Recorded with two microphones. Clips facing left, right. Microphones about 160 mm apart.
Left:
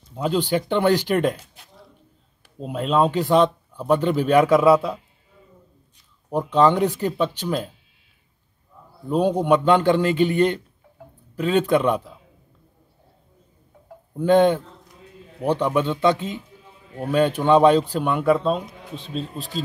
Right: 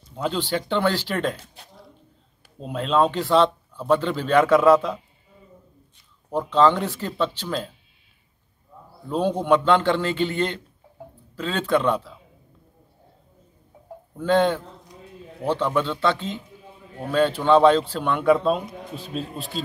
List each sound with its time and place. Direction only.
0.1 s speech: 10° left (ahead or behind)
2.6 s speech: 10° left (ahead or behind)
6.3 s speech: 15° left (ahead or behind)
9.1 s speech: 10° left (ahead or behind)
14.1 s speech: 15° left (ahead or behind); by 19.5 s 5° right (ahead or behind)